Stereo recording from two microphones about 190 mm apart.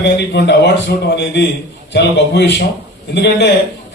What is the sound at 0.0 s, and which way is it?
A man's voice, 65° left (ahead or behind).